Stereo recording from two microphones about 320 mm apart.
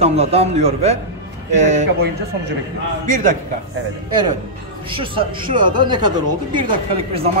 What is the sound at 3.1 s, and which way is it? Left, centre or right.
Speech, right.